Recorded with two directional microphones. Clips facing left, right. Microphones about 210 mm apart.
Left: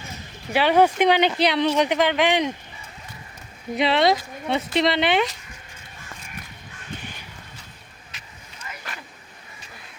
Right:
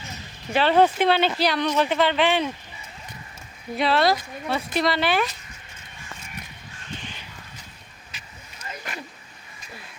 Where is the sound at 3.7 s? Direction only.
20° left (ahead or behind).